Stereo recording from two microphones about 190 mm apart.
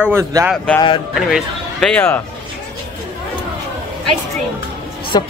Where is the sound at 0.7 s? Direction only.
25° left (ahead or behind).